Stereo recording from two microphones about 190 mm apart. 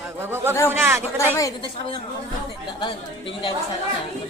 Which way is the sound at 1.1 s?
15° left (ahead or behind).